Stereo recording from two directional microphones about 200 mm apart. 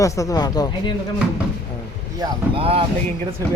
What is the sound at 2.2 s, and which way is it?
Speech, 30° right (ahead or behind).